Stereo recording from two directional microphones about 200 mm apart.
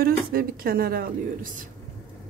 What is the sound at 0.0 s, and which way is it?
Speech, 50° right (ahead or behind).